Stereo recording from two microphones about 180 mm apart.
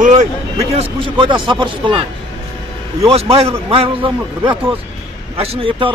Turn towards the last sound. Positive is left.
turn(degrees=-30)  # may be behind; listen again after turning